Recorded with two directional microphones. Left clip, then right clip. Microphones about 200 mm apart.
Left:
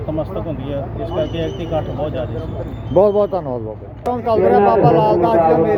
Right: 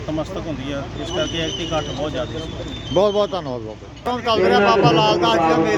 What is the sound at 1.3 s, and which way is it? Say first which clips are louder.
Speech: left 1 dB; 10° left (ahead or behind).